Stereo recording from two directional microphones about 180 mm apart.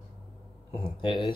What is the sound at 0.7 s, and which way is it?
Speech, 25° left (ahead or behind).